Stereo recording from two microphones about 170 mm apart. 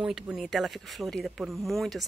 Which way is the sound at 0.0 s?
5° right (ahead or behind).